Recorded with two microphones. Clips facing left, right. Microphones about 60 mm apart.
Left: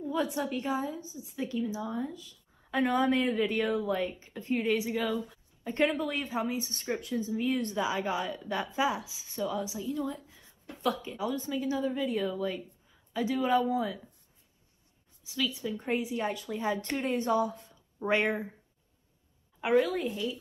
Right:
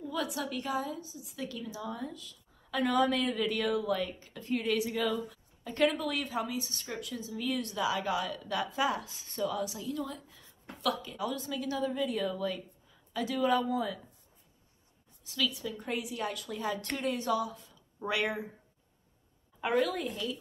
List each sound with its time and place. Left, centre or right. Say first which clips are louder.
0.0 s a woman's voice: left 4 dB; left
8.8 s a woman's voice: left 1 dB; centre
9.5 s a woman's voice: left 1 dB; centre
15.2 s speech: left 1 dB; centre
15.7 s a woman's voice: left 5 dB; left
19.6 s a woman's voice: left 3 dB; centre